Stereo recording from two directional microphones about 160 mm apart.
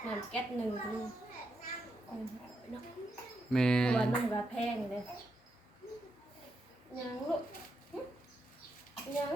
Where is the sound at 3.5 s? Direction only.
5° left (ahead or behind).